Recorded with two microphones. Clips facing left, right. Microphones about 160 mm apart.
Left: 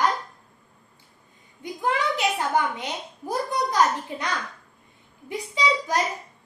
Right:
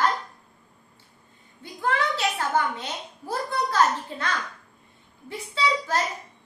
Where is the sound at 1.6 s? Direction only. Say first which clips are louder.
Left 1 dB; 15° left (ahead or behind).